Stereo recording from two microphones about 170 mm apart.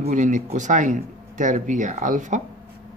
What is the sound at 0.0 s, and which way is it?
Speech, 45° right (ahead or behind).